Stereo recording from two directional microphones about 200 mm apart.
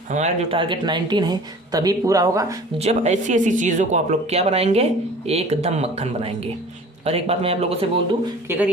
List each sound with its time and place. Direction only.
0.1 s speech: 30° right (ahead or behind); by 2.6 s 15° right (ahead or behind)
2.7 s speech: 35° right (ahead or behind)
8.4 s speech: 10° right (ahead or behind)